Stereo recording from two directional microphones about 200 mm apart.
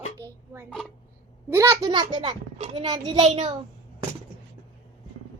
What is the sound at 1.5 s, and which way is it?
A child's voice, 15° right (ahead or behind).